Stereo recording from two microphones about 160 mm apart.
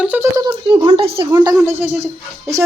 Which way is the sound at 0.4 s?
25° right (ahead or behind).